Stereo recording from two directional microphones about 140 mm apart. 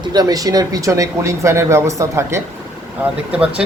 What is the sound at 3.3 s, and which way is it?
Speech, 10° right (ahead or behind).